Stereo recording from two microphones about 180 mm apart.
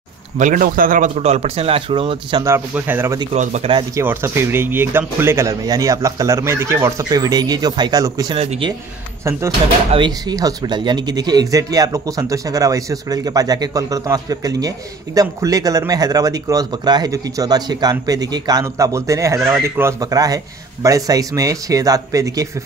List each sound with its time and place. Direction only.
0.4 s a man's voice: 50° right (ahead or behind); by 2.4 s 30° right (ahead or behind)
2.4 s speech: 10° right (ahead or behind)
3.3 s a man's voice: 40° right (ahead or behind)
4.0 s speech: 10° right (ahead or behind)
8.4 s a man's voice: 30° right (ahead or behind)
9.9 s speech: 25° right (ahead or behind)